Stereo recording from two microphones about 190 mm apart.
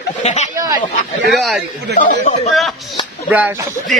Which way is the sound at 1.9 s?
60° right (ahead or behind).